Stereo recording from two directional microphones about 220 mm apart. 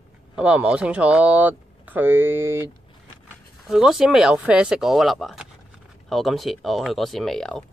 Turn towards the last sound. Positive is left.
turn(degrees=0)  # may be behind; listen again after turning